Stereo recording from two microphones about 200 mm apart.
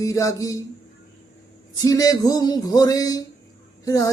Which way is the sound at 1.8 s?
15° left (ahead or behind).